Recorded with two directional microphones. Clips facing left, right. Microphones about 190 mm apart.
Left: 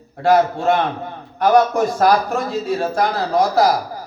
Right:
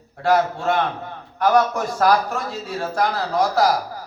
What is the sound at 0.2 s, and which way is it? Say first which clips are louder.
A man's voice: left 4 dB; 20° left (ahead or behind).